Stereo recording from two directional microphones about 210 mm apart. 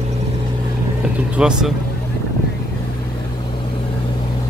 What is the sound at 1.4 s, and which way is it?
Speech, 5° right (ahead or behind).